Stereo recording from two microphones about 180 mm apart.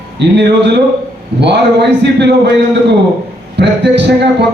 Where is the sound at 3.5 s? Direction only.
70° right (ahead or behind).